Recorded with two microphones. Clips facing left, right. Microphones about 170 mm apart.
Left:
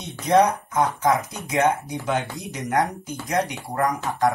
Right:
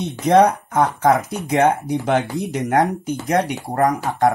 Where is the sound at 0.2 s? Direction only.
65° right (ahead or behind).